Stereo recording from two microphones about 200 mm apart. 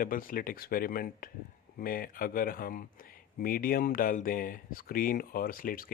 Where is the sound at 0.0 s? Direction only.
45° left (ahead or behind).